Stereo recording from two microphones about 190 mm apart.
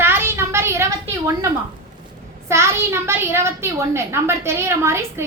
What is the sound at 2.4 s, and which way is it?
A woman's voice, 15° right (ahead or behind).